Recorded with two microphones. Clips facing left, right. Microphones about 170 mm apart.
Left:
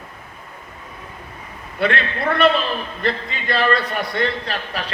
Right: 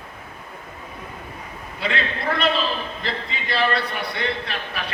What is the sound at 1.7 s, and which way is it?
A man's voice, 60° left (ahead or behind).